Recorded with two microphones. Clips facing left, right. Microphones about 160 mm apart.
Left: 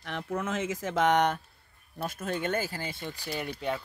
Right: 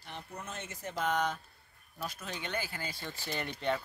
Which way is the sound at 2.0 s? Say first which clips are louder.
Left 8 dB; 50° left (ahead or behind).